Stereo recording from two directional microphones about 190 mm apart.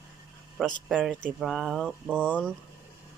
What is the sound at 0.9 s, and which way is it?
Speech, centre (ahead or behind).